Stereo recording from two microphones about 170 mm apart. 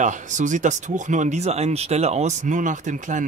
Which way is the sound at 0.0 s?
45° right (ahead or behind).